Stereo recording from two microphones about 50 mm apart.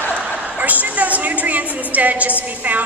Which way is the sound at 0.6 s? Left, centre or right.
Right.